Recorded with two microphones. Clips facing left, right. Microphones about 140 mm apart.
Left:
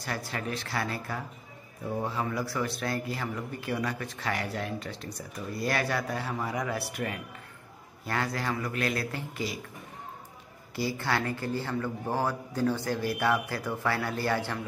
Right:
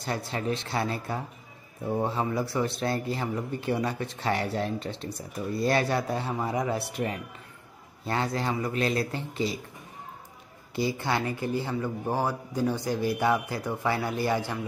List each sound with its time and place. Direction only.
0.0 s speech: 25° right (ahead or behind)
10.8 s a man's voice: 20° right (ahead or behind)